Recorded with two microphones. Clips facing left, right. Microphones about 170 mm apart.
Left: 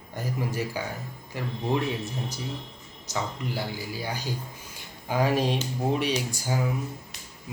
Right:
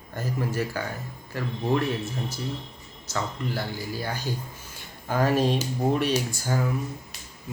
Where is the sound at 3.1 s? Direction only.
10° left (ahead or behind).